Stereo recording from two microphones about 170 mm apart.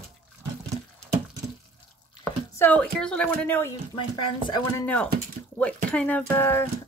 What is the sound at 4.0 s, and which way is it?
Speech, 30° left (ahead or behind).